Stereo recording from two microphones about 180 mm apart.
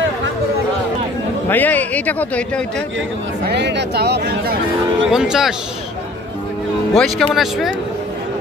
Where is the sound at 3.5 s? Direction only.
70° right (ahead or behind).